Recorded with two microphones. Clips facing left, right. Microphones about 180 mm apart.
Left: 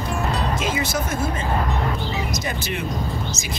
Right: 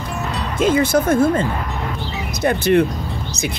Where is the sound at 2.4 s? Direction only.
60° right (ahead or behind).